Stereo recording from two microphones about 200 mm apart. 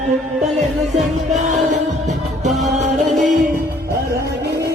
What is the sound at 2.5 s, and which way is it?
Music, centre (ahead or behind).